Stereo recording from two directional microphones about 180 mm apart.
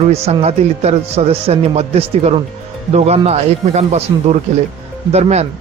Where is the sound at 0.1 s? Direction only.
35° right (ahead or behind).